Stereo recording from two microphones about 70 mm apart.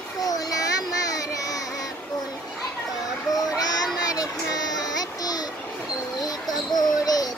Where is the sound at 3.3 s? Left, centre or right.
Left.